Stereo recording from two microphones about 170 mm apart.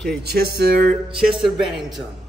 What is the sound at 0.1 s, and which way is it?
Speech, 75° right (ahead or behind).